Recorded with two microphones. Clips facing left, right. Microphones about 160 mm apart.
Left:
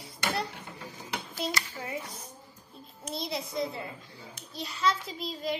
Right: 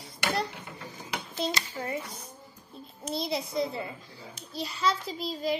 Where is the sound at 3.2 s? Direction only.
Centre (ahead or behind).